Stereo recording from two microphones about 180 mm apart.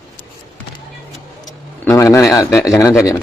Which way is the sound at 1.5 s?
15° left (ahead or behind).